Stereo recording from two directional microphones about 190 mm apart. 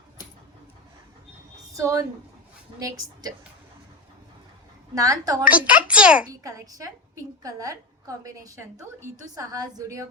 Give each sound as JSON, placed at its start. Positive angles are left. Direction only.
{"t": 1.7, "sound": "a woman's voice", "side_deg": -15}
{"t": 4.9, "sound": "a woman's voice", "side_deg": -15}
{"t": 5.5, "sound": "a woman's voice", "side_deg": -5}
{"t": 6.4, "sound": "a woman's voice", "side_deg": -20}